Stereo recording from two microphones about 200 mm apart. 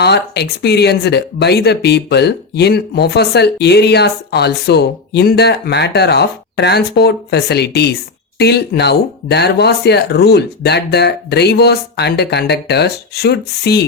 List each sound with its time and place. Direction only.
0.0 s speech: 55° left (ahead or behind)